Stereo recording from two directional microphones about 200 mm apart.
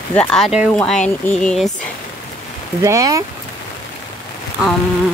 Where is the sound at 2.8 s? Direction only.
15° right (ahead or behind).